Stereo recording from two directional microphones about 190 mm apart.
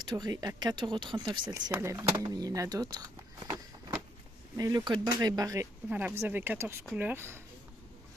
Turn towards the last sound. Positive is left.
turn(degrees=-10)  # may be behind; listen again after turning